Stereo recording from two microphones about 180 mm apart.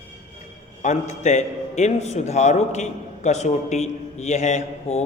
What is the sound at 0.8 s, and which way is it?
A man's voice, 40° left (ahead or behind).